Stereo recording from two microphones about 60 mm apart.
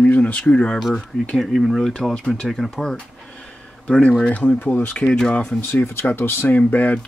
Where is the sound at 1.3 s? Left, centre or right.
Centre.